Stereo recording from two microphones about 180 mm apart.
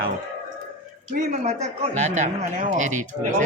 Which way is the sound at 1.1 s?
40° right (ahead or behind).